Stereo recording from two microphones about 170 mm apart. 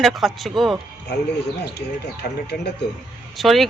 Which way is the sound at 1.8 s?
80° left.